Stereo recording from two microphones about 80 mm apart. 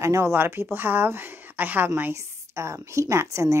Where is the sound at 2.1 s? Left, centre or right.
Right.